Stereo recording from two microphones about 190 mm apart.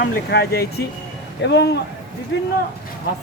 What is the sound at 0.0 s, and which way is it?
Speech, 55° left (ahead or behind).